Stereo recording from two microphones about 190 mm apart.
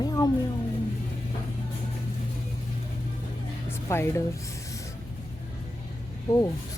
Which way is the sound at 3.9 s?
15° left (ahead or behind).